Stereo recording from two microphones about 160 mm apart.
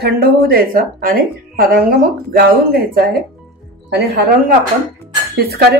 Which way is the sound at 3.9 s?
90° right.